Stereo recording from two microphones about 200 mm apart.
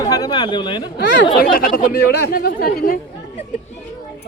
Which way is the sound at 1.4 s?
45° left (ahead or behind).